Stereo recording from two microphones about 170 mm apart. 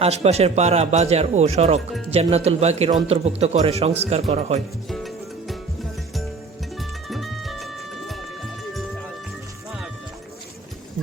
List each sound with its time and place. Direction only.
0.0 s speech: 40° right (ahead or behind)
4.9 s music: centre (ahead or behind)
6.7 s music: centre (ahead or behind)